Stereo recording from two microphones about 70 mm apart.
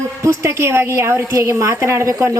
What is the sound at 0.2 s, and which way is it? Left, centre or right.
A woman's voice, right.